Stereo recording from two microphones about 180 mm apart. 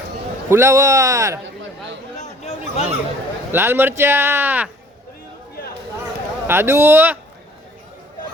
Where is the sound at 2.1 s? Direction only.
40° left (ahead or behind).